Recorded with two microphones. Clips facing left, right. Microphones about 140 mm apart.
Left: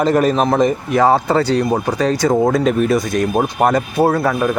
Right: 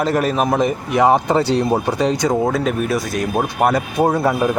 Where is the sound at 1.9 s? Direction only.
20° right (ahead or behind).